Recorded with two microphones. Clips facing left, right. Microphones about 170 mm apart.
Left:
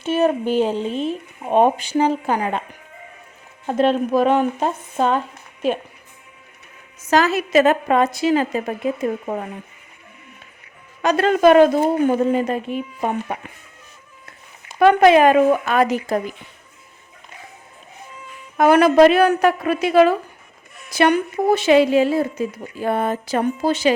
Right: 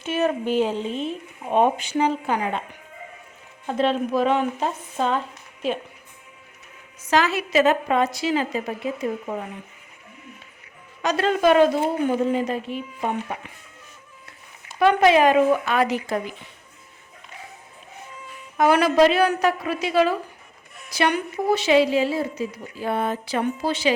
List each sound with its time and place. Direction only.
0.0 s a sound: 30° left (ahead or behind)
0.6 s speech: 30° left (ahead or behind)
3.7 s a woman's voice: 50° left (ahead or behind)
7.0 s a woman's voice: 45° left (ahead or behind)
11.0 s a woman's voice: 55° left (ahead or behind)
14.8 s a woman's voice: 50° left (ahead or behind)
18.5 s a woman's voice: 50° left (ahead or behind)